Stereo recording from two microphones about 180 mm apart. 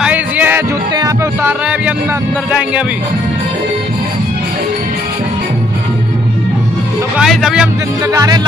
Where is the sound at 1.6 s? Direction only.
10° right (ahead or behind).